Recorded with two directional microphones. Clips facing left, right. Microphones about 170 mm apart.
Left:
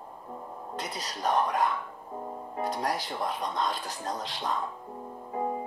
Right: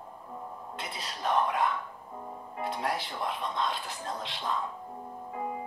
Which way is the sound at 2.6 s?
40° left (ahead or behind).